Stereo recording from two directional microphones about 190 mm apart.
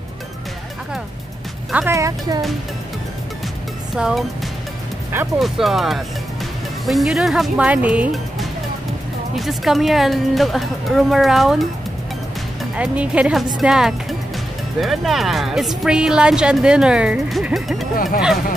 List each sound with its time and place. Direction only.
1.7 s speech: 5° right (ahead or behind)
2.0 s speech: 20° right (ahead or behind)
3.9 s speech: centre (ahead or behind)
5.4 s speech: centre (ahead or behind)
12.7 s speech: 5° right (ahead or behind)